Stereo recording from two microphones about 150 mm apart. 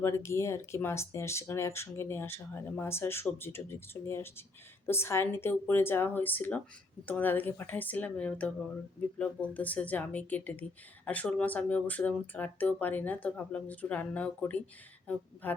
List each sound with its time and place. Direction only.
0.0 s speech: 20° left (ahead or behind)